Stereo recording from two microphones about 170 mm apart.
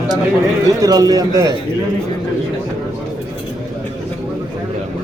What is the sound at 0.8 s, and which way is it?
Speech, 20° right (ahead or behind).